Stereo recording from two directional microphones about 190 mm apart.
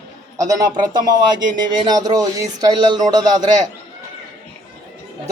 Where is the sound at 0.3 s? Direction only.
20° right (ahead or behind).